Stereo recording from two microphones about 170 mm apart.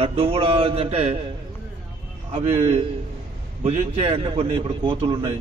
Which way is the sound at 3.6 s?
35° right (ahead or behind).